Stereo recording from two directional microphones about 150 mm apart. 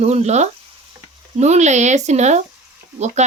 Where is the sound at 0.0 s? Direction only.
45° right (ahead or behind).